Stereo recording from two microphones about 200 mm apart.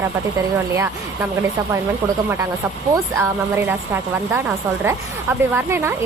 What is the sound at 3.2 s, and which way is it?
Speech, 10° right (ahead or behind).